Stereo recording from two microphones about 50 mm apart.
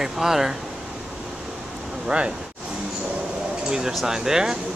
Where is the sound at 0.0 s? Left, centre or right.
Centre.